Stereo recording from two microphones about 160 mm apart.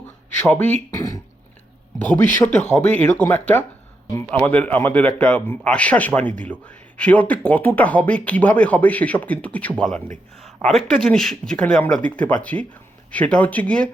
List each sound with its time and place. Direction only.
0.4 s speech: 10° left (ahead or behind)
2.4 s speech: 15° left (ahead or behind)